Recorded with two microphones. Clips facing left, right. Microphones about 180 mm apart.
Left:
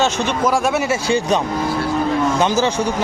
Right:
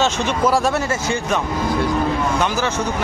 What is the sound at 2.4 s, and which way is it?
Speech, 20° left (ahead or behind).